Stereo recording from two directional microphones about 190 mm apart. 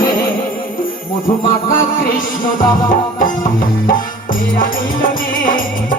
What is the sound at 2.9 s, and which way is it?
Music, 45° left (ahead or behind).